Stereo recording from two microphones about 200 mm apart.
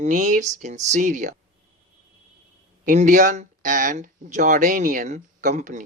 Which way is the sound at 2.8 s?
40° right (ahead or behind).